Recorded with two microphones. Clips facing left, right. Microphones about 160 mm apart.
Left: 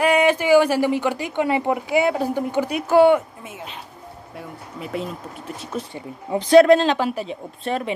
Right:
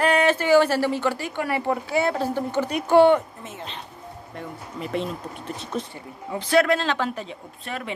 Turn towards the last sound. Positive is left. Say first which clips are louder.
# left 8 dB
turn(degrees=30)  # may be behind; listen again after turning